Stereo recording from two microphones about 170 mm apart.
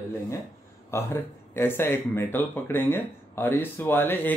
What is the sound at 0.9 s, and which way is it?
Speech, 15° left (ahead or behind).